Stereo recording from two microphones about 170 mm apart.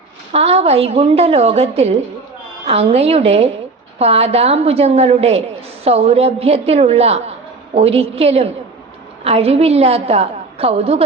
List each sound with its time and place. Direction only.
0.3 s a woman's voice: 35° right (ahead or behind)